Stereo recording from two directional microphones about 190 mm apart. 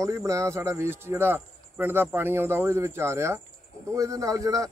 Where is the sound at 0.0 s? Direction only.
15° right (ahead or behind).